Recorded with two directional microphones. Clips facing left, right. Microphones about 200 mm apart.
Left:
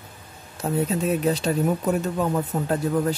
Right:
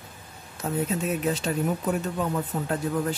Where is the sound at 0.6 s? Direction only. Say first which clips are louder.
Left 3 dB; 35° left (ahead or behind).